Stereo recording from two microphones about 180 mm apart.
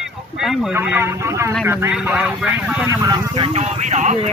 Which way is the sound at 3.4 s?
40° right (ahead or behind).